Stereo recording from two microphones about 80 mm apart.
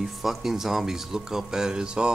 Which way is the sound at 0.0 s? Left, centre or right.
Centre.